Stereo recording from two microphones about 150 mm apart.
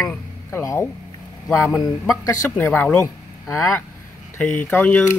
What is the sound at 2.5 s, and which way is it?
Speech, 10° left (ahead or behind).